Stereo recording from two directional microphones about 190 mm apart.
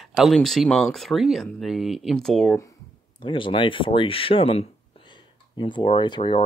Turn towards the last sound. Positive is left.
turn(degrees=25)  # may be behind; listen again after turning